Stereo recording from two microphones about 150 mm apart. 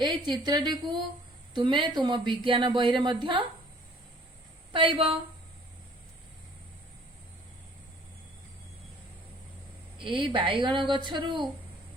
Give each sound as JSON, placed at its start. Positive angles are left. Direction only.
{"t": 0.0, "sound": "a woman's voice", "side_deg": -30}
{"t": 4.7, "sound": "a woman's voice", "side_deg": -35}
{"t": 10.0, "sound": "a woman's voice", "side_deg": -35}